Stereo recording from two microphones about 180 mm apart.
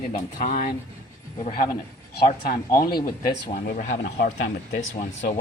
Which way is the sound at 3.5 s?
45° left (ahead or behind).